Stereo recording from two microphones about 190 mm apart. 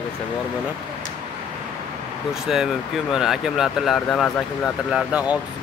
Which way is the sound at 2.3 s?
5° right (ahead or behind).